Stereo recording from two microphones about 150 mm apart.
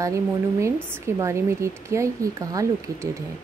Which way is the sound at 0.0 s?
20° right (ahead or behind).